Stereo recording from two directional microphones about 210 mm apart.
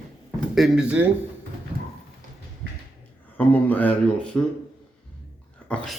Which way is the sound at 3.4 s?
10° left (ahead or behind).